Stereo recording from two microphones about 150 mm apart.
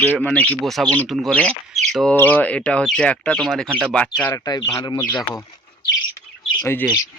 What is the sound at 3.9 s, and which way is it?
Speech, 10° left (ahead or behind).